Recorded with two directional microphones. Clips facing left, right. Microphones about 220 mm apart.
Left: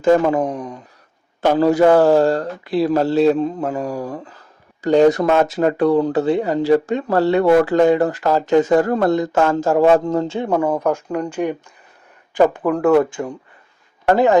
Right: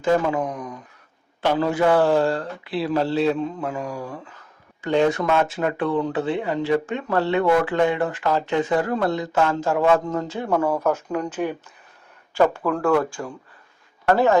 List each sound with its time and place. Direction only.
0.0 s speech: 45° left (ahead or behind)
0.4 s speech: 30° left (ahead or behind)
1.4 s speech: 40° left (ahead or behind); by 13.3 s 20° left (ahead or behind)